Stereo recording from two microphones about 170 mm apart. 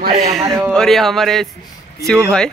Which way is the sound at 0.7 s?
Centre (ahead or behind).